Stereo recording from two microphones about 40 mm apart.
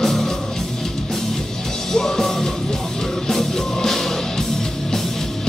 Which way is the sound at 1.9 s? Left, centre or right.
Centre.